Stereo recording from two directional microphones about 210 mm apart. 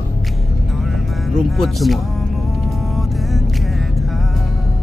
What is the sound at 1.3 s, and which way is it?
Speech, centre (ahead or behind).